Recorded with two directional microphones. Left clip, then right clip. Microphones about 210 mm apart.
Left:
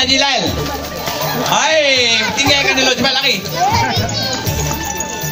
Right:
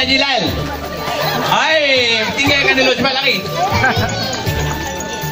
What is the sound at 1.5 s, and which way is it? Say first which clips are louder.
A man's voice: left 1 dB; 5° left (ahead or behind).